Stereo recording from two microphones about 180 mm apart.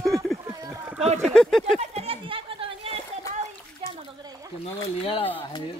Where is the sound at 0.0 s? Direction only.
Centre (ahead or behind).